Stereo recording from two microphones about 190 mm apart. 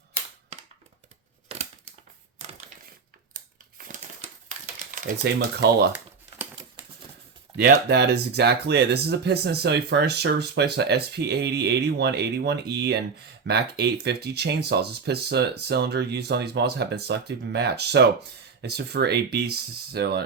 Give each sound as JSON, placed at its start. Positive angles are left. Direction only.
{"t": 3.3, "sound": "crushing", "side_deg": -45}
{"t": 4.4, "sound": "typewriter", "side_deg": -40}
{"t": 5.2, "sound": "speech", "side_deg": -60}
{"t": 7.5, "sound": "speech", "side_deg": -55}